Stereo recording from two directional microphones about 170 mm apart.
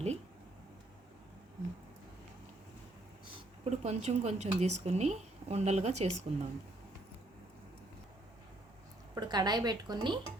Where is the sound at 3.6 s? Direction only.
40° right (ahead or behind).